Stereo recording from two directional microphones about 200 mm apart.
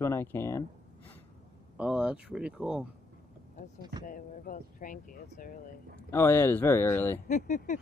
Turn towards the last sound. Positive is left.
turn(degrees=40)  # may be behind; listen again after turning